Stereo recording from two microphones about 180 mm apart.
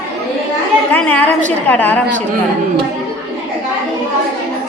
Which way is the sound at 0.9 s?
10° left (ahead or behind).